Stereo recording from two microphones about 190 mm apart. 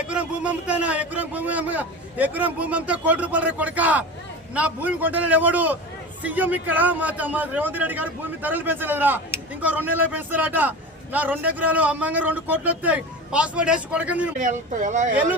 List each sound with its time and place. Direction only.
0.1 s a man's voice: 5° right (ahead or behind)
14.3 s speech: 45° right (ahead or behind)